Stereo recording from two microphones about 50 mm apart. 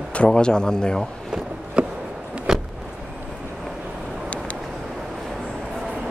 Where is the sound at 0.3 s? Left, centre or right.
Centre.